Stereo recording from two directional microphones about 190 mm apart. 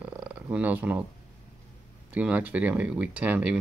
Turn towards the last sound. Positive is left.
turn(degrees=-5)  # may be behind; listen again after turning